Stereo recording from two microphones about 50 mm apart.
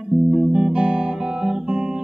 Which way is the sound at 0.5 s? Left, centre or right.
Centre.